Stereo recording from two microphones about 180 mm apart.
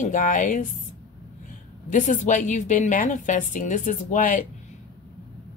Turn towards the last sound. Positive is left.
turn(degrees=45)  # may be behind; listen again after turning